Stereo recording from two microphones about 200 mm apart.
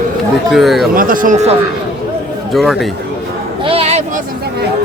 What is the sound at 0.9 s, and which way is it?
Speech, 45° right (ahead or behind).